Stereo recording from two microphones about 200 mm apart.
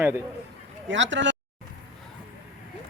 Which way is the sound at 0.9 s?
65° right (ahead or behind).